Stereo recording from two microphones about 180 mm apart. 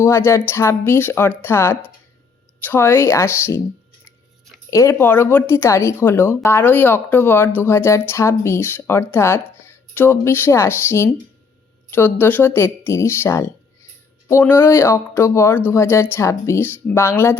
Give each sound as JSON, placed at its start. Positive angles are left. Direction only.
{"t": 0.0, "sound": "speech", "side_deg": 15}
{"t": 4.7, "sound": "speech", "side_deg": 15}